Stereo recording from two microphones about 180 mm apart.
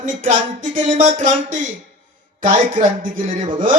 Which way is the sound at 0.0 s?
45° right (ahead or behind).